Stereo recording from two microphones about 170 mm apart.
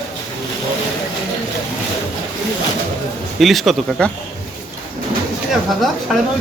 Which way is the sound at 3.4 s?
Centre (ahead or behind).